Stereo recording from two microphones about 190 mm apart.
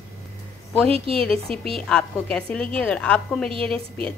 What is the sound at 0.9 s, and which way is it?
Speech, 30° right (ahead or behind).